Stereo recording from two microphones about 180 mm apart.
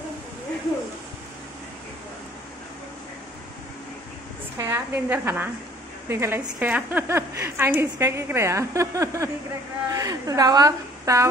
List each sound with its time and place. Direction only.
4.6 s a woman's voice: 15° right (ahead or behind)